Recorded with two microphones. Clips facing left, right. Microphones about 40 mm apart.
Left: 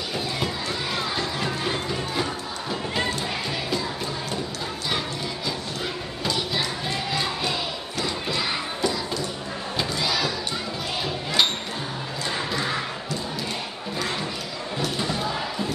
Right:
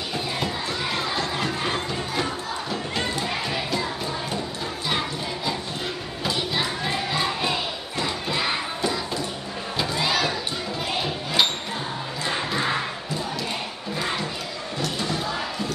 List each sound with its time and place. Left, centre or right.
0.9 s music: centre
6.2 s music: centre
8.0 s crowd: centre
10.0 s crowd: right
12.3 s crowd: right